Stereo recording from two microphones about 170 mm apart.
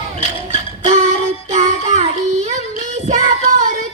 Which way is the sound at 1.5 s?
40° right (ahead or behind).